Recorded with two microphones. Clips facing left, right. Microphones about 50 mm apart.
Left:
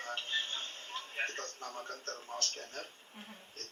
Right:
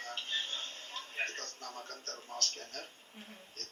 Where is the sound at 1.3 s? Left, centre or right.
Left.